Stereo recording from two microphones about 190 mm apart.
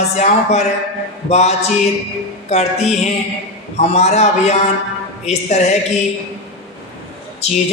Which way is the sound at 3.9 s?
35° left (ahead or behind).